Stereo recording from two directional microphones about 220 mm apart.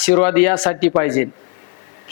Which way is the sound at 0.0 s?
10° left (ahead or behind).